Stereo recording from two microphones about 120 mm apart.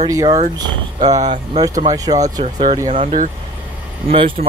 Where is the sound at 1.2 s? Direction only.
80° right.